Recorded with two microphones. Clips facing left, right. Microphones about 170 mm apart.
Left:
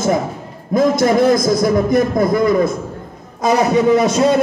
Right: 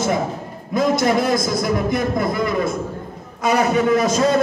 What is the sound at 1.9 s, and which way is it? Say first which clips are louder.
Speech: left 6 dB; 45° left (ahead or behind).